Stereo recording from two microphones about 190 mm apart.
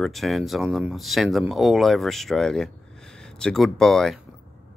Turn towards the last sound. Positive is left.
turn(degrees=0)  # may be behind; listen again after turning